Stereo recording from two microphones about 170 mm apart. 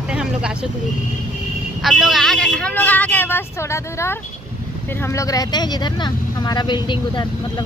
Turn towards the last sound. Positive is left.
turn(degrees=25)  # may be behind; listen again after turning